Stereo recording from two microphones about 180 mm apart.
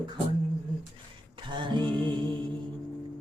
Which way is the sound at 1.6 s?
25° right (ahead or behind).